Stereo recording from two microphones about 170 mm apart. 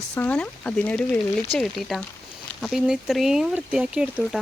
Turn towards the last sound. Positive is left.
turn(degrees=-5)  # may be behind; listen again after turning